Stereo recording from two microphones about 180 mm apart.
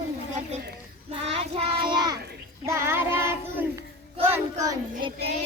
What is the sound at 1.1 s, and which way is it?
Child singing, 35° right (ahead or behind).